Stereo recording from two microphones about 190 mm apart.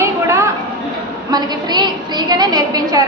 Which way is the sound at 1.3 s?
20° right (ahead or behind).